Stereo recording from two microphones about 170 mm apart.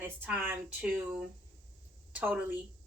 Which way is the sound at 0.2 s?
10° right (ahead or behind).